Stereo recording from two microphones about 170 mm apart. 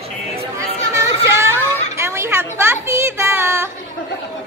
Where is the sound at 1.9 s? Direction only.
15° right (ahead or behind).